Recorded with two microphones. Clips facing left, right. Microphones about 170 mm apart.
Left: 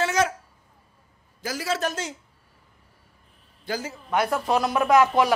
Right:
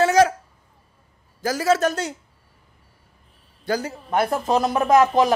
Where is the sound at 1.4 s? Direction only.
45° right (ahead or behind).